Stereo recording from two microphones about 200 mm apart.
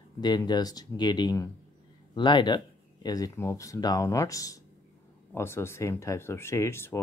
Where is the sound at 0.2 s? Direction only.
20° left (ahead or behind).